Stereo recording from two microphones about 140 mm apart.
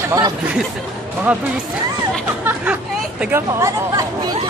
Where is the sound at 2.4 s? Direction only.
10° right (ahead or behind).